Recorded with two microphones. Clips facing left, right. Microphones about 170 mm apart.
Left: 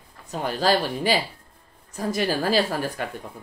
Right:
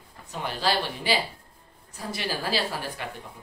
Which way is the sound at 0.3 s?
45° left (ahead or behind).